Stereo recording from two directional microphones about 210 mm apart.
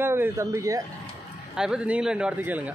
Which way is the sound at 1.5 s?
5° right (ahead or behind).